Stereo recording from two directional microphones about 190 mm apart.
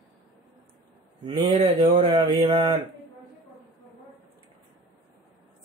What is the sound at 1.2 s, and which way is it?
Speech, 25° right (ahead or behind).